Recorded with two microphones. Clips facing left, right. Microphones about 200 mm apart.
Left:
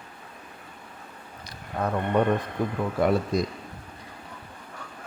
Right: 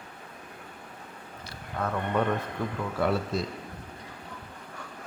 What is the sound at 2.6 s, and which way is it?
Speech, 15° left (ahead or behind).